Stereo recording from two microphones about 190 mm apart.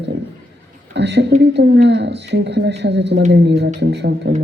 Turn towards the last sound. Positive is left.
turn(degrees=-60)  # may be behind; listen again after turning